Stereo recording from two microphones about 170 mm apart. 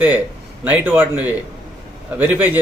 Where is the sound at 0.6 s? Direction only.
10° right (ahead or behind).